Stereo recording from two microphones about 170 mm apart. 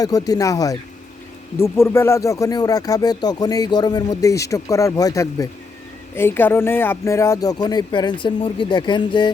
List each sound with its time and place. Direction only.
0.0 s speech: 20° left (ahead or behind)